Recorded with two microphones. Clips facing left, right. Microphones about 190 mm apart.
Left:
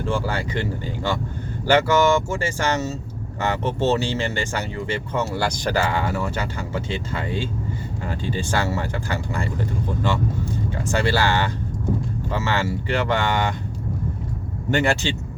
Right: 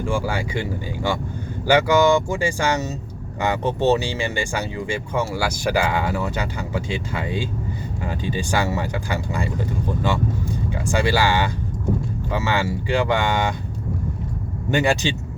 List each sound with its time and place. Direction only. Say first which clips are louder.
0.0 s speech: right 1 dB; 10° right (ahead or behind)
10.7 s speech: right 1 dB; 15° right (ahead or behind)
14.7 s speech: right 1 dB; 15° right (ahead or behind)